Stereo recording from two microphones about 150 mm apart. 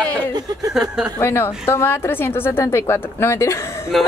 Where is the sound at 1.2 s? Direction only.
15° left (ahead or behind).